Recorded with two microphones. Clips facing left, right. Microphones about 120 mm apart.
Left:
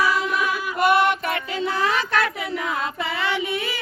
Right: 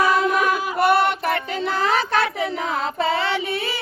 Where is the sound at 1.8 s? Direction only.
35° right (ahead or behind).